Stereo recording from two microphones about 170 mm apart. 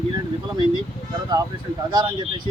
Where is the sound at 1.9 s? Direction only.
25° right (ahead or behind).